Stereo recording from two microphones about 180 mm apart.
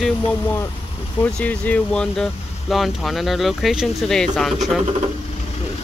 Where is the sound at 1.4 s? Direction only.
5° left (ahead or behind).